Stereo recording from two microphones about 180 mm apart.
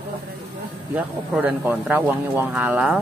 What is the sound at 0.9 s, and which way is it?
Speech, 10° right (ahead or behind).